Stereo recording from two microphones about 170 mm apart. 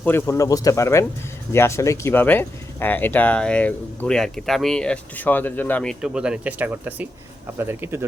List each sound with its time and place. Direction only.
0.0 s speech: 15° left (ahead or behind); by 8.0 s 15° right (ahead or behind)